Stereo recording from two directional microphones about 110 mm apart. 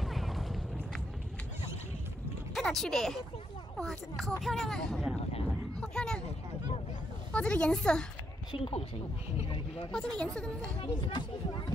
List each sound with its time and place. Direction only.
0.0 s a sound: centre (ahead or behind)
2.5 s speech: centre (ahead or behind)
5.8 s a sound: 10° left (ahead or behind)
7.3 s a woman's voice: 10° left (ahead or behind)
8.5 s speech: 55° left (ahead or behind)
9.9 s a woman's voice: 10° left (ahead or behind)
10.8 s speech: 45° left (ahead or behind)